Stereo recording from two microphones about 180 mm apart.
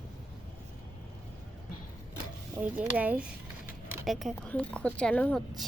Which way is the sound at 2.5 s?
5° right (ahead or behind).